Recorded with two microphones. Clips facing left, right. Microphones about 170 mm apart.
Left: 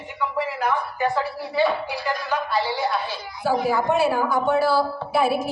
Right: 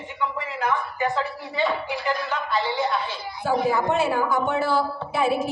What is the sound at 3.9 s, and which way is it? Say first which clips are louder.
Speech: left 2 dB; 20° right (ahead or behind).